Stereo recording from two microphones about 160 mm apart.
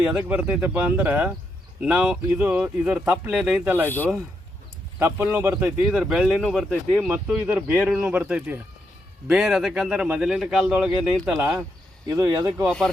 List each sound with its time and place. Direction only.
0.0 s speech: 10° right (ahead or behind)
3.8 s a man's voice: 10° left (ahead or behind)
4.9 s a man's voice: 15° right (ahead or behind)